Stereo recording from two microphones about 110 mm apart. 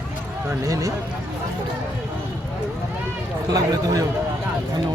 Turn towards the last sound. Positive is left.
turn(degrees=-35)  # may be behind; listen again after turning